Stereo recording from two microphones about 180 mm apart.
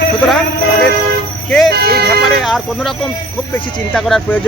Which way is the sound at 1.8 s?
60° right (ahead or behind).